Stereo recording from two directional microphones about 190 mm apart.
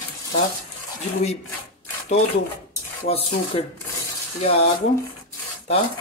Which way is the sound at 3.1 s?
30° left (ahead or behind).